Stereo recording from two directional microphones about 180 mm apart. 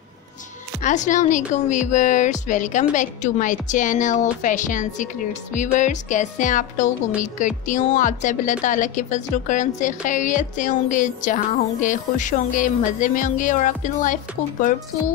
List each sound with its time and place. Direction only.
0.8 s a woman's voice: 45° left (ahead or behind)